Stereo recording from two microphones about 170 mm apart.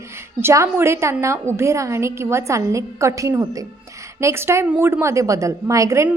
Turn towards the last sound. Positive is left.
turn(degrees=-15)  # may be behind; listen again after turning